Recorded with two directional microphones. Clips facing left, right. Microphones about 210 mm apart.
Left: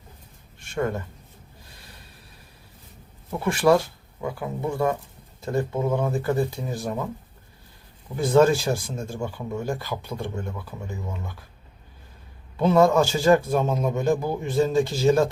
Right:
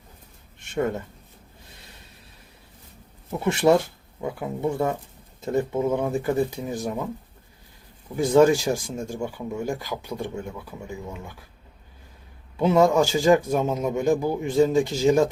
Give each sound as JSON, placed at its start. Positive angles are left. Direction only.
{"t": 0.6, "sound": "speech", "side_deg": -20}
{"t": 3.4, "sound": "a man's voice", "side_deg": -25}
{"t": 8.2, "sound": "a man's voice", "side_deg": -15}
{"t": 12.5, "sound": "a man's voice", "side_deg": -15}